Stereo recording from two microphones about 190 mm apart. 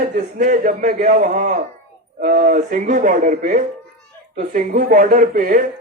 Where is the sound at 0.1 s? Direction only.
40° right (ahead or behind).